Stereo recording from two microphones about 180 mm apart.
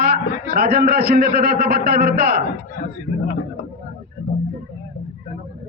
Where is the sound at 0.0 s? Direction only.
60° right (ahead or behind).